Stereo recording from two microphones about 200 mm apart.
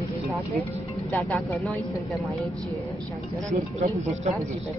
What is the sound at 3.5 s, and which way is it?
Speech, 35° right (ahead or behind).